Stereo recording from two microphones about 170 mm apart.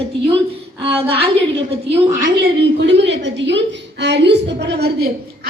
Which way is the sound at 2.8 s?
90° right.